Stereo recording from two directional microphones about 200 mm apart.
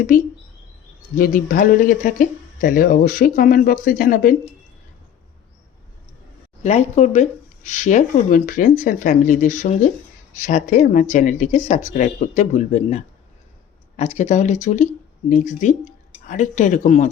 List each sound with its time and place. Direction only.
0.1 s speech: 40° left (ahead or behind)
6.6 s speech: 35° left (ahead or behind)